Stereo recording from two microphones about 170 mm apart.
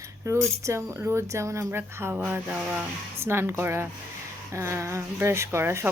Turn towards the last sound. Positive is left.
turn(degrees=-15)  # may be behind; listen again after turning